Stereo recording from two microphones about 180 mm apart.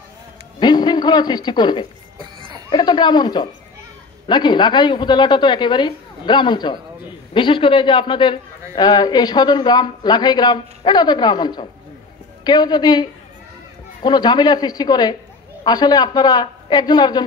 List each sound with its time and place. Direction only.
0.6 s a man's voice: 25° left (ahead or behind)